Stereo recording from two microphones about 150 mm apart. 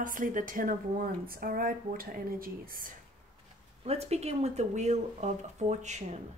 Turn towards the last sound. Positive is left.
turn(degrees=-50)  # may be behind; listen again after turning